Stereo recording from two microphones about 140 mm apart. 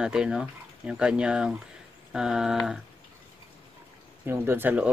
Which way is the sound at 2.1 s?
5° right (ahead or behind).